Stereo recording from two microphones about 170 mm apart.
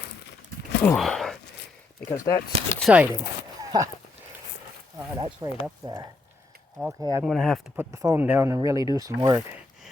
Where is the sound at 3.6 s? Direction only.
20° right (ahead or behind).